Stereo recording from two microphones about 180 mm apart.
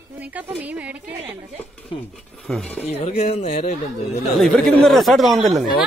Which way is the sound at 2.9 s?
35° left (ahead or behind).